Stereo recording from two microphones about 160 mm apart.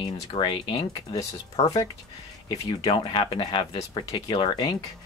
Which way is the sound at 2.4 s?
25° left (ahead or behind).